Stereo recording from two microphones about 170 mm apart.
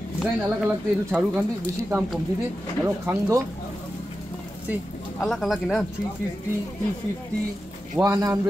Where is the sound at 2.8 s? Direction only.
15° right (ahead or behind).